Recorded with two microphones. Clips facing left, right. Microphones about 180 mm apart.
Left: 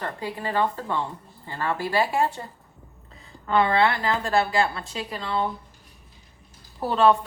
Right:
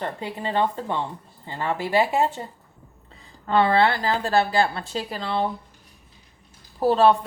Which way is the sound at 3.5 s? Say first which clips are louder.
Right 2 dB; 30° right (ahead or behind).